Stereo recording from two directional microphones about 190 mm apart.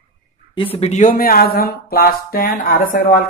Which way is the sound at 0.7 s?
35° left (ahead or behind).